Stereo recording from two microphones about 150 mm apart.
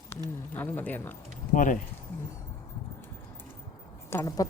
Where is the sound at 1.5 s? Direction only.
60° left (ahead or behind).